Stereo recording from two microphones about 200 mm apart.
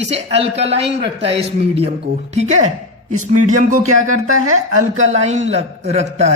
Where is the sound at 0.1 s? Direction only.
30° right (ahead or behind).